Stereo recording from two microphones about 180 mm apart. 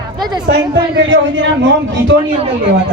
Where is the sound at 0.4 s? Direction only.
80° right.